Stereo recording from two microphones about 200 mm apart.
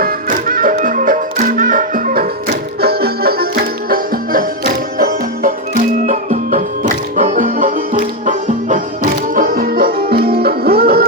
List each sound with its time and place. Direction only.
0.0 s music: 45° right (ahead or behind)